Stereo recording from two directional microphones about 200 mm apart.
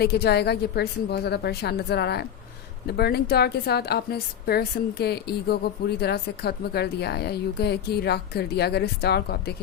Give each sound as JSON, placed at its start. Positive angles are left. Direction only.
{"t": 0.0, "sound": "a woman's voice", "side_deg": 55}